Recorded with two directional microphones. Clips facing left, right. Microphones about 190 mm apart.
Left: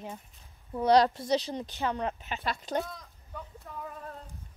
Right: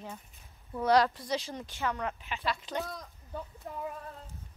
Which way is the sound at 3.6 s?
25° right (ahead or behind).